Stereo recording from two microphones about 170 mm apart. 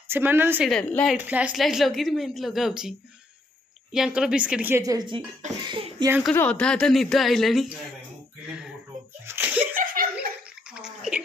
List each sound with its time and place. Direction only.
0.1 s a woman's voice: 10° right (ahead or behind)
0.7 s a woman's voice: 5° left (ahead or behind)
1.1 s a woman's voice: 10° right (ahead or behind)
3.9 s a woman's voice: 5° right (ahead or behind); by 6.0 s 30° right (ahead or behind)
6.3 s a woman's voice: 10° left (ahead or behind)
8.5 s a sound: centre (ahead or behind)
9.2 s slap: 10° right (ahead or behind)
9.8 s laughter: 55° right (ahead or behind)
10.7 s a sound: 5° right (ahead or behind)